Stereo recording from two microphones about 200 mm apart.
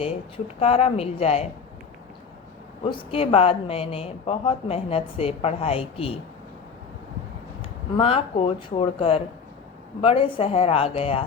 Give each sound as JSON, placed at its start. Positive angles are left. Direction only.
{"t": 0.0, "sound": "speech", "side_deg": 30}
{"t": 2.9, "sound": "speech", "side_deg": 25}
{"t": 7.9, "sound": "speech", "side_deg": 30}